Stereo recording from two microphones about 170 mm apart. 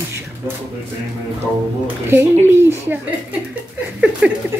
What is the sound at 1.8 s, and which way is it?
Speech, 15° right (ahead or behind).